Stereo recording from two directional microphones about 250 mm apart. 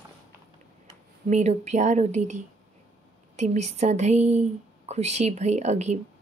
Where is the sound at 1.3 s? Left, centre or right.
Right.